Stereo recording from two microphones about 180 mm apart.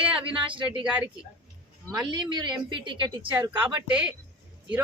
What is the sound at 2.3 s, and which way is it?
A woman's voice, 25° right (ahead or behind).